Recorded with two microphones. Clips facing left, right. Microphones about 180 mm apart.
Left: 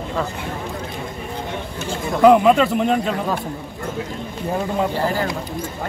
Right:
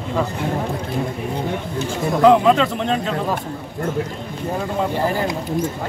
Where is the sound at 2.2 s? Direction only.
10° left (ahead or behind).